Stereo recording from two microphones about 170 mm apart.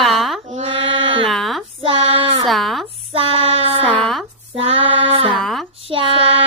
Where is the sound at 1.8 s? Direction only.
35° right (ahead or behind).